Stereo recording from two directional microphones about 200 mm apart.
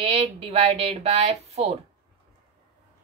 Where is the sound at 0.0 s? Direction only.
30° right (ahead or behind).